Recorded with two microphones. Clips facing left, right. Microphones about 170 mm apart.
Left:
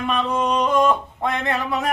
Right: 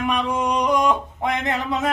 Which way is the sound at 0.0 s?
15° right (ahead or behind).